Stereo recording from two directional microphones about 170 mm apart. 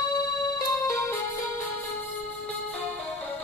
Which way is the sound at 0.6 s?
20° left (ahead or behind).